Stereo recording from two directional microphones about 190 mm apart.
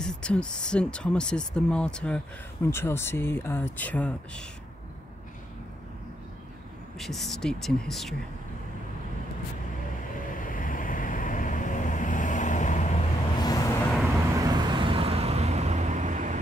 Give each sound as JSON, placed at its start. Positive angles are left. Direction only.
{"t": 0.0, "sound": "speech", "side_deg": 5}
{"t": 7.0, "sound": "speech", "side_deg": 0}
{"t": 10.3, "sound": "vehicle", "side_deg": 45}
{"t": 13.4, "sound": "vehicle", "side_deg": 20}
{"t": 14.1, "sound": "vehicle", "side_deg": -20}